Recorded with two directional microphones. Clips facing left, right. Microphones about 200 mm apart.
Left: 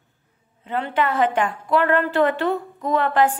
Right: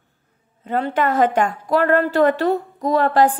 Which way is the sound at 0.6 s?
40° right (ahead or behind).